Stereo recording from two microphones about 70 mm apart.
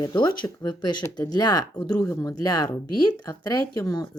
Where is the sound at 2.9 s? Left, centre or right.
Left.